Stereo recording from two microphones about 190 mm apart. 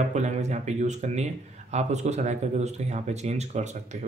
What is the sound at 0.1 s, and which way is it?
Speech, 35° right (ahead or behind).